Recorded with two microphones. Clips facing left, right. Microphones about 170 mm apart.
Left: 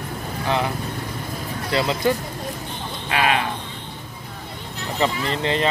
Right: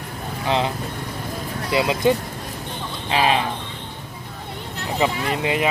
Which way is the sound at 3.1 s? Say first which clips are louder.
Right 2 dB; 25° right (ahead or behind).